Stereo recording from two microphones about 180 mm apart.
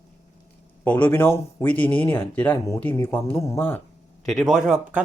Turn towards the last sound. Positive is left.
turn(degrees=-5)  # may be behind; listen again after turning